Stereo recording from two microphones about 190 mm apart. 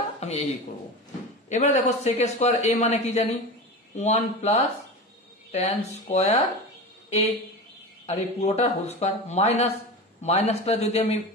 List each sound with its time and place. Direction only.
0.2 s a man's voice: 35° left (ahead or behind)
1.5 s a man's voice: 35° left (ahead or behind)
8.1 s a man's voice: 35° left (ahead or behind)